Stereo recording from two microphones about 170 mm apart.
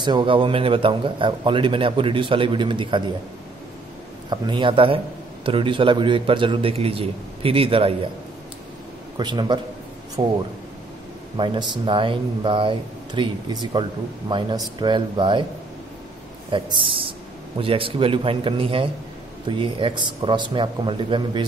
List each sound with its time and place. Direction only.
0.0 s speech: 25° right (ahead or behind)
4.3 s a man's voice: 25° right (ahead or behind)
9.1 s a man's voice: 25° right (ahead or behind)
11.3 s speech: 30° right (ahead or behind)
16.4 s a man's voice: 30° right (ahead or behind)